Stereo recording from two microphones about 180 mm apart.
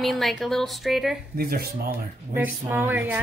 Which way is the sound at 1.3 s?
55° right (ahead or behind).